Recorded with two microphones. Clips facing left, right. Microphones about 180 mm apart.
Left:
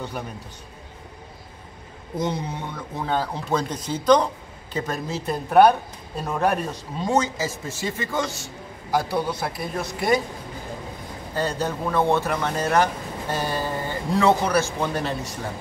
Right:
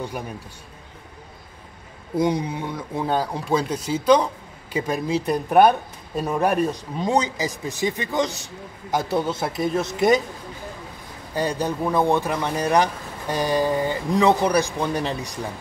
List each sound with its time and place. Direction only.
2.1 s a man's voice: 10° right (ahead or behind)
11.3 s speech: 15° right (ahead or behind)